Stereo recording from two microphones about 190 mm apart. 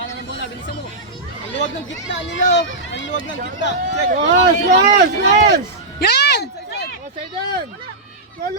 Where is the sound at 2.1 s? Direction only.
70° left (ahead or behind).